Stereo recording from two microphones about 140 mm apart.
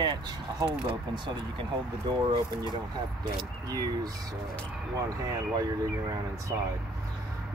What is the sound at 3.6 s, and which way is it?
Speech, 25° right (ahead or behind).